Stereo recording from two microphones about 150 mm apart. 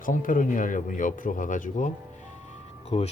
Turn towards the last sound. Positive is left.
turn(degrees=40)  # may be behind; listen again after turning